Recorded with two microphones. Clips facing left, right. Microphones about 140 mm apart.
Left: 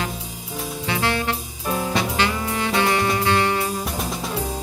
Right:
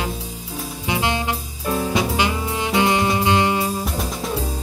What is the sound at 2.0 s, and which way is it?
Music, 15° right (ahead or behind).